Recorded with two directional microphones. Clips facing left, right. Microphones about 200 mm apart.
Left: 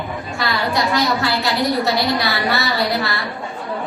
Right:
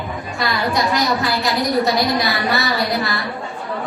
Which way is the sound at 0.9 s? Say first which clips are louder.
Even; 15° right (ahead or behind).